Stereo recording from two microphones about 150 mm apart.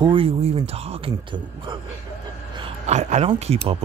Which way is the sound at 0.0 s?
35° right (ahead or behind).